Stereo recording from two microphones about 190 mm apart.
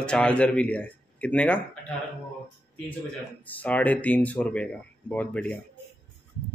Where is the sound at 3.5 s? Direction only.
10° left (ahead or behind).